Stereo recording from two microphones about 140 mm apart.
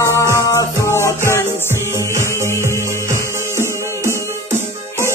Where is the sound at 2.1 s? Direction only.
20° right (ahead or behind).